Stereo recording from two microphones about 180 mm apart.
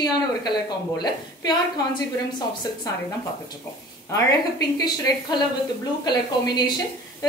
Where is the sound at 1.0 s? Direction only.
25° left (ahead or behind).